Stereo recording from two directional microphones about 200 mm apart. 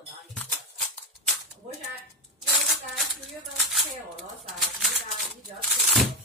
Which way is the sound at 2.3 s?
Centre (ahead or behind).